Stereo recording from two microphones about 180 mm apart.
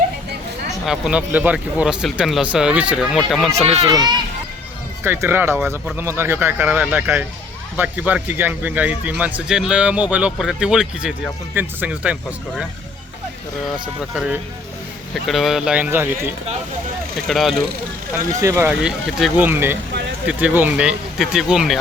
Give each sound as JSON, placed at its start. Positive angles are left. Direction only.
{"t": 0.9, "sound": "speech", "side_deg": -5}
{"t": 3.8, "sound": "a child's voice", "side_deg": -25}
{"t": 15.1, "sound": "speech", "side_deg": 0}
{"t": 17.2, "sound": "speech", "side_deg": 0}
{"t": 18.4, "sound": "speech", "side_deg": -10}
{"t": 19.4, "sound": "a man's voice", "side_deg": -10}